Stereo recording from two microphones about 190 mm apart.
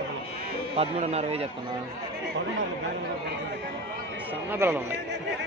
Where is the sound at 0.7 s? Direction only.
30° right (ahead or behind).